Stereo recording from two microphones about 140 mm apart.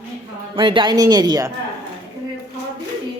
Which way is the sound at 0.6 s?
35° right (ahead or behind).